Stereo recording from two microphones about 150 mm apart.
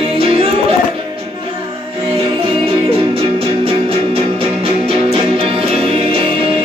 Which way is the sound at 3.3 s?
40° right (ahead or behind).